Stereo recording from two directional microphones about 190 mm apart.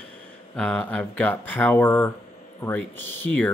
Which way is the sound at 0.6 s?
5° left (ahead or behind).